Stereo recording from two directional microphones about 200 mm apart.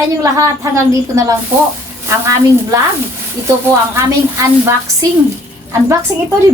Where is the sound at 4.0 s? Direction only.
15° right (ahead or behind).